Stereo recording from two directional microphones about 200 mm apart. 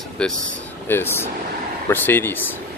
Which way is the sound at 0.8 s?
10° left (ahead or behind).